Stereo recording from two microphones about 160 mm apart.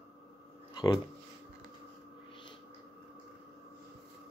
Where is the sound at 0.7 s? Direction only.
25° left (ahead or behind).